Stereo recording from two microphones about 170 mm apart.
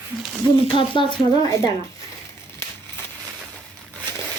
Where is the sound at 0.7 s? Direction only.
30° left (ahead or behind).